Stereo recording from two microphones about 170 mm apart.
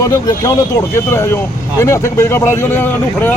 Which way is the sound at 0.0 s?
20° left (ahead or behind).